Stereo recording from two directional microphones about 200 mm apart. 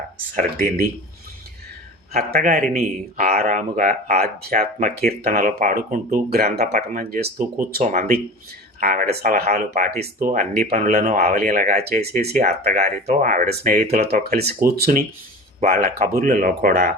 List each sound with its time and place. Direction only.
2.1 s speech: 45° right (ahead or behind)
10.0 s speech: 45° right (ahead or behind)